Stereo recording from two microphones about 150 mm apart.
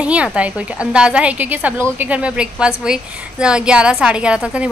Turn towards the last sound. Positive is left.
turn(degrees=-5)  # may be behind; listen again after turning